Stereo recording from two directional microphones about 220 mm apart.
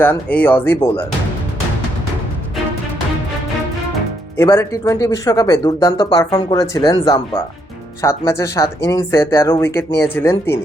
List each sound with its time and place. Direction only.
0.0 s speech: 10° left (ahead or behind)
4.4 s speech: 15° left (ahead or behind)